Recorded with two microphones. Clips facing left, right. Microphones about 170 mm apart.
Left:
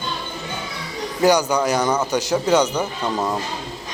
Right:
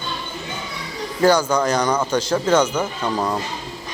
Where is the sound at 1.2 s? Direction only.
15° left (ahead or behind).